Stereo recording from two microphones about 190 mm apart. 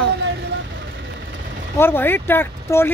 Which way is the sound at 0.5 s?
65° right (ahead or behind).